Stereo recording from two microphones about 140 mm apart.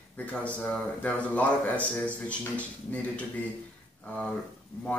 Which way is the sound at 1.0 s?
10° left (ahead or behind).